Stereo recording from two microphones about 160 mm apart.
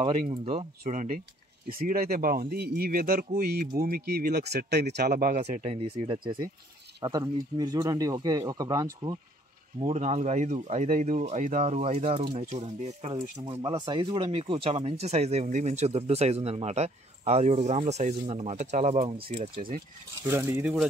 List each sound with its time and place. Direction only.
0.5 s speech: 40° right (ahead or behind)
1.9 s speech: 65° right (ahead or behind); by 9.2 s 20° right (ahead or behind)
9.8 s speech: 40° right (ahead or behind)
13.1 s speech: 30° right (ahead or behind)
20.2 s speech: 15° right (ahead or behind)